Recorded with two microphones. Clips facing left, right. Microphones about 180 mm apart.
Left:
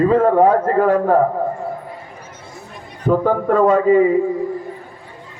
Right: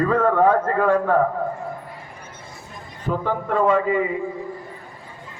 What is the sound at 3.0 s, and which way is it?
A man's voice, 45° left (ahead or behind).